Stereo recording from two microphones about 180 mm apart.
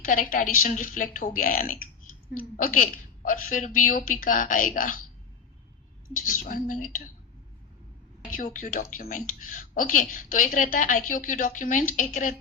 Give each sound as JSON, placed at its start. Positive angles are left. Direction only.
{"t": 0.0, "sound": "a woman's voice", "side_deg": 50}
{"t": 6.1, "sound": "a woman's voice", "side_deg": 50}
{"t": 8.4, "sound": "a woman's voice", "side_deg": 50}